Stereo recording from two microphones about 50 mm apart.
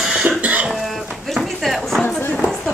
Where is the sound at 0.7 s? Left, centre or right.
Centre.